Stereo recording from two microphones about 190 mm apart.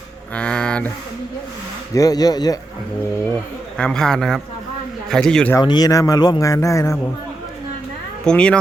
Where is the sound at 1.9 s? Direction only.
20° left (ahead or behind).